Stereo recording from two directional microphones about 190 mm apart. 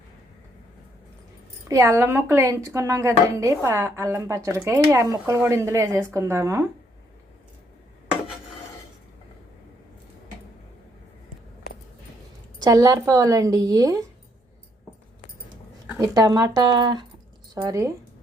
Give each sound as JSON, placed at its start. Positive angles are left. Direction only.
{"t": 1.6, "sound": "speech", "side_deg": -15}
{"t": 12.5, "sound": "speech", "side_deg": -20}
{"t": 16.0, "sound": "speech", "side_deg": -20}